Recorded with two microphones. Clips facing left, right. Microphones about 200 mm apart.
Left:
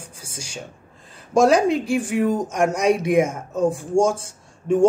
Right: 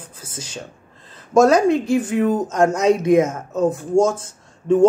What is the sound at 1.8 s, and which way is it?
Speech, 15° left (ahead or behind).